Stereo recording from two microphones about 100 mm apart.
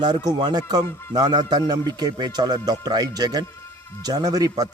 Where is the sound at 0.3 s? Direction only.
45° right (ahead or behind).